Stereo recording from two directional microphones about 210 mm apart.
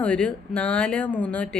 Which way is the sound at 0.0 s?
5° left (ahead or behind).